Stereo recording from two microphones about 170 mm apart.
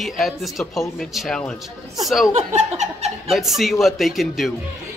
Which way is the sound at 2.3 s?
40° right (ahead or behind).